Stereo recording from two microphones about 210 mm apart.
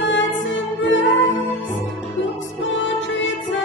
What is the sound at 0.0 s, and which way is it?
Music, 60° left (ahead or behind).